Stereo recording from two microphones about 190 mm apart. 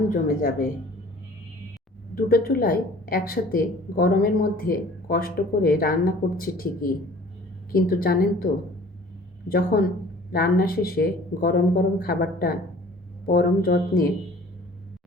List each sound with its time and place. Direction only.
0.1 s a woman's voice: 50° left (ahead or behind)
2.1 s a woman's voice: 50° left (ahead or behind)
9.5 s a woman's voice: 50° left (ahead or behind)